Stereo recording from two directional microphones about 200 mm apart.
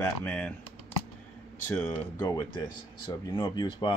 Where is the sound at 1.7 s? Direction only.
10° left (ahead or behind).